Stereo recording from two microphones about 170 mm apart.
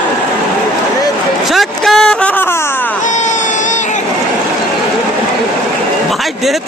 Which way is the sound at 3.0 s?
45° left (ahead or behind).